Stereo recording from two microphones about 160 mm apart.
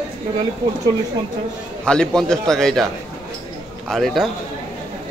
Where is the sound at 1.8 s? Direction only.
5° left (ahead or behind).